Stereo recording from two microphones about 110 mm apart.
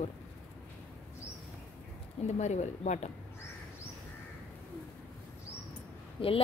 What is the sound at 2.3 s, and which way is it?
Speech, 90° left.